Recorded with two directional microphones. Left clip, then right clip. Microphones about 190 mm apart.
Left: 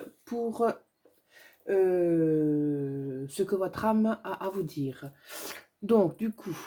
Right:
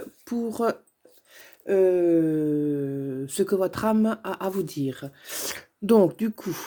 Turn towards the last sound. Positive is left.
turn(degrees=-45)  # may be behind; listen again after turning